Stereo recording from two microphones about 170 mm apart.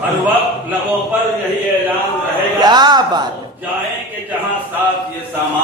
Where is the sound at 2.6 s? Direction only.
25° right (ahead or behind).